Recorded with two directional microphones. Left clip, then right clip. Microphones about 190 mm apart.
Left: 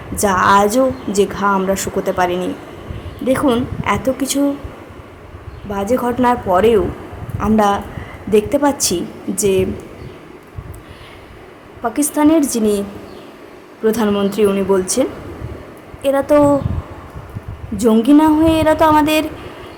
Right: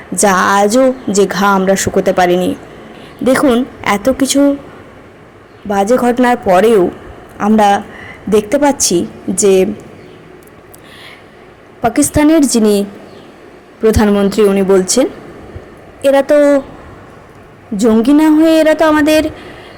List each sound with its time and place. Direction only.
0.2 s speech: 25° right (ahead or behind)
5.6 s speech: 25° right (ahead or behind)
11.8 s speech: 20° right (ahead or behind)
13.8 s a woman's voice: 20° right (ahead or behind)
17.7 s a woman's voice: 15° right (ahead or behind)